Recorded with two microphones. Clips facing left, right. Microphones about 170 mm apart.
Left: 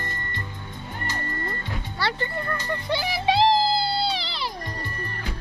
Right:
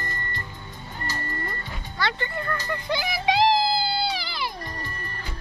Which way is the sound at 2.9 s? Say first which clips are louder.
Left 1 dB; 30° left (ahead or behind).